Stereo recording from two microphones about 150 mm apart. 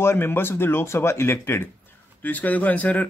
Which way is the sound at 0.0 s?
15° left (ahead or behind).